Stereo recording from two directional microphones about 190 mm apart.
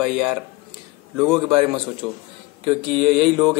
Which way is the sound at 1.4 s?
30° right (ahead or behind).